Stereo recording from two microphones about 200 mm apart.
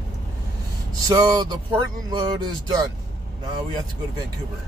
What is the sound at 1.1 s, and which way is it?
Speech, 20° right (ahead or behind).